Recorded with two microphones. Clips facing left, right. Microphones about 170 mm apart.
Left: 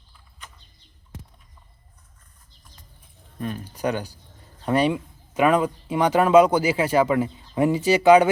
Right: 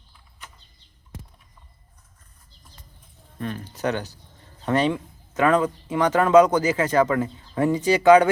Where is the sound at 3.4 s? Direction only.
10° left (ahead or behind).